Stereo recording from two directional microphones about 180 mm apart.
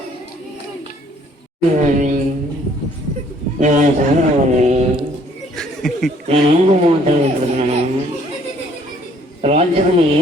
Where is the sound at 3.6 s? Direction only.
45° right (ahead or behind).